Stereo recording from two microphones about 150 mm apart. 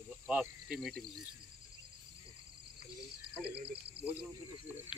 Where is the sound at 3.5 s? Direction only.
90° right.